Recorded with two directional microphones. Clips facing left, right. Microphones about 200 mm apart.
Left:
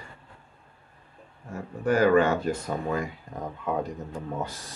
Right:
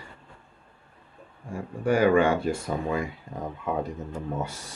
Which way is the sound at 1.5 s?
10° right (ahead or behind).